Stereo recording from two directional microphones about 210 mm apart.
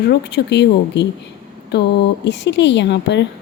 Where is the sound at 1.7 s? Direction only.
55° left (ahead or behind).